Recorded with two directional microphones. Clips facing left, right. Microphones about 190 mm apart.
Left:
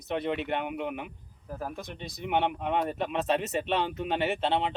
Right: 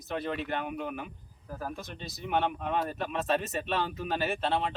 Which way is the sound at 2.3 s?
20° left (ahead or behind).